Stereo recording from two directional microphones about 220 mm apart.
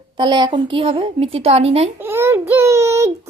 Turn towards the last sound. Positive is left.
turn(degrees=-15)  # may be behind; listen again after turning